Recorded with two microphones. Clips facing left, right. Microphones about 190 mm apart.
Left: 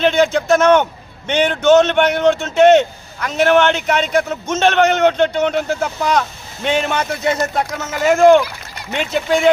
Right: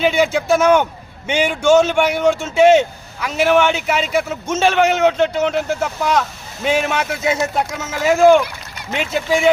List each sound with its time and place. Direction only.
0.0 s speech: 10° right (ahead or behind)